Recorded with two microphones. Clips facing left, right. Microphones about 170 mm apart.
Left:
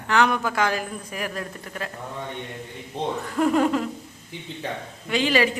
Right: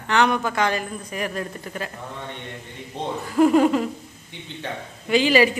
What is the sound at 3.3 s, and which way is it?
Speech, 5° right (ahead or behind).